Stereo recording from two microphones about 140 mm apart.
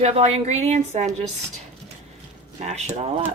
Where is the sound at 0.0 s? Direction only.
50° right (ahead or behind).